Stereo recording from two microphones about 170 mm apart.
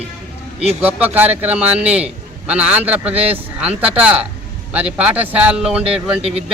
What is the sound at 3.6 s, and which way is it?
A man's voice, 5° right (ahead or behind).